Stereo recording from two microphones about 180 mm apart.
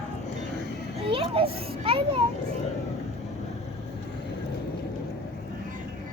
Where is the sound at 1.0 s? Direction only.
30° right (ahead or behind).